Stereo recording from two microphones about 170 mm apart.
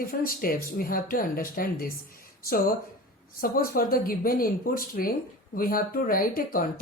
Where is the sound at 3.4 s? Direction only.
60° left (ahead or behind).